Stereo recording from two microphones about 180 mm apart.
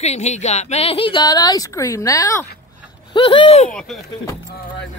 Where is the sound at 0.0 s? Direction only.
35° left (ahead or behind); by 2.4 s 20° left (ahead or behind).